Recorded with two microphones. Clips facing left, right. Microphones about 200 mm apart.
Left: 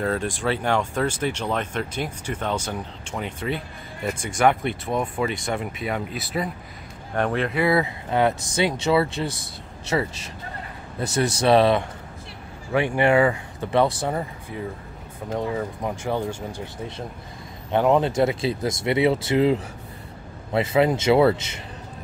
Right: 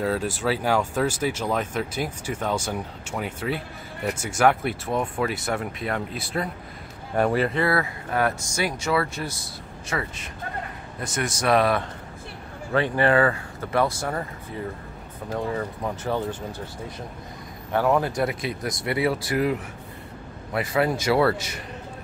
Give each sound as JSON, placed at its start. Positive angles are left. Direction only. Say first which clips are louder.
{"t": 0.0, "sound": "speech", "louder": "even", "side_deg": -5}
{"t": 7.5, "sound": "speech", "louder": "left 3 dB", "side_deg": 15}
{"t": 12.7, "sound": "speech", "louder": "left 1 dB", "side_deg": 15}
{"t": 15.3, "sound": "speech", "louder": "left 1 dB", "side_deg": 15}
{"t": 17.6, "sound": "speech", "louder": "left 3 dB", "side_deg": 20}